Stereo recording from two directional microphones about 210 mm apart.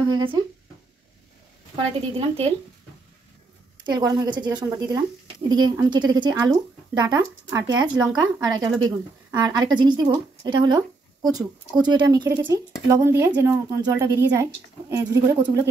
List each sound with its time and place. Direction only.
1.8 s a woman's voice: 25° right (ahead or behind)
3.8 s a woman's voice: 20° right (ahead or behind)